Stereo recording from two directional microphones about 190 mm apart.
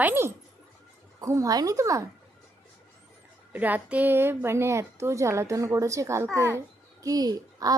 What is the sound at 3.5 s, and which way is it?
A woman's voice, 10° right (ahead or behind).